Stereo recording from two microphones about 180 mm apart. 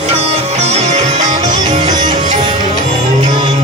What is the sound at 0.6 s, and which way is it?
Music, 40° right (ahead or behind).